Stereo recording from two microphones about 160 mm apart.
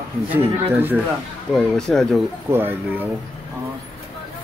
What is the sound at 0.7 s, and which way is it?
Speech, 10° right (ahead or behind).